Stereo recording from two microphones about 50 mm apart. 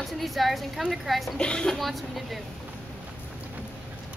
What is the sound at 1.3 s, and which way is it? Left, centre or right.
Speech, centre.